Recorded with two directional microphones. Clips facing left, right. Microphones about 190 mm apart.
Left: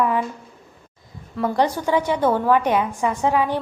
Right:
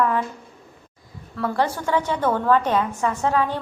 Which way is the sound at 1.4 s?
15° left (ahead or behind).